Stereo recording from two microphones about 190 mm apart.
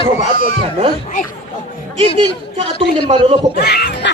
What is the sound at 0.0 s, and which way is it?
Speech, 40° left (ahead or behind).